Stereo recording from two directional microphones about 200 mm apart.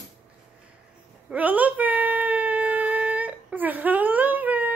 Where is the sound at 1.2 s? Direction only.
5° right (ahead or behind).